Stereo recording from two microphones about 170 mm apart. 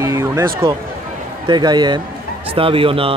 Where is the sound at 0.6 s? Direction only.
30° right (ahead or behind).